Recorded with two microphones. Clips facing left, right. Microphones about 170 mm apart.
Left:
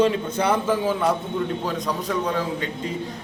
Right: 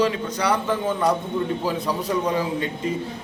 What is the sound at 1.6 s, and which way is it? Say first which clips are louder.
A man's voice: right 2 dB; 10° right (ahead or behind).